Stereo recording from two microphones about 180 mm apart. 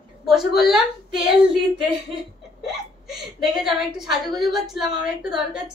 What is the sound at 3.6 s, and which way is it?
A woman's voice, centre (ahead or behind).